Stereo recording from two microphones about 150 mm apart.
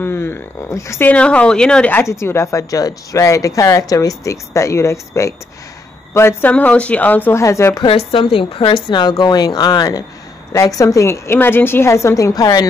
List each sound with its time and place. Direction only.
0.0 s speech: 15° left (ahead or behind)
8.1 s speech: 35° left (ahead or behind)